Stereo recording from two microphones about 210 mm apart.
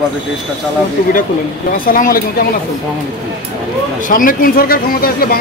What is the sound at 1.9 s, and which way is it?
Speech, 40° left (ahead or behind).